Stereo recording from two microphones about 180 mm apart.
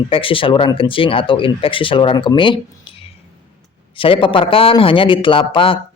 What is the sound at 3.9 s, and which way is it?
Speech, 30° left (ahead or behind).